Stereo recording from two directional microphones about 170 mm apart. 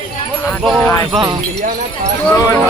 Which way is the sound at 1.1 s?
25° right (ahead or behind).